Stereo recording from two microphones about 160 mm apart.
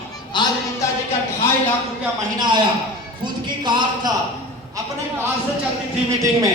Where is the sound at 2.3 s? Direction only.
25° right (ahead or behind).